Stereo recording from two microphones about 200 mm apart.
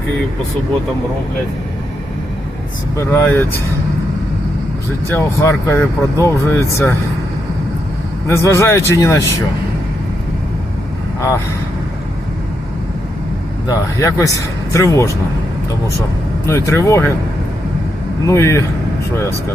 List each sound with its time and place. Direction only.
3.0 s speech: 10° left (ahead or behind)
5.0 s speech: 15° left (ahead or behind)
8.3 s speech: 15° left (ahead or behind)
13.7 s speech: 15° left (ahead or behind)
16.5 s speech: 15° left (ahead or behind)
18.3 s speech: 15° left (ahead or behind)